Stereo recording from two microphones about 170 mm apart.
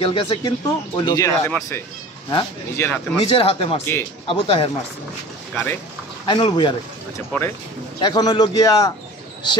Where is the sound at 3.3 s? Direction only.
35° left (ahead or behind).